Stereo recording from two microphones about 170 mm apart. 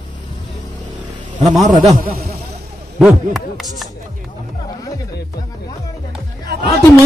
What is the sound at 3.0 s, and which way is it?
Speech, centre (ahead or behind).